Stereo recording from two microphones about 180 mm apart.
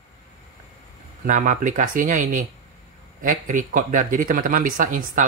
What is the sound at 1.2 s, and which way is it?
Speech, 50° right (ahead or behind).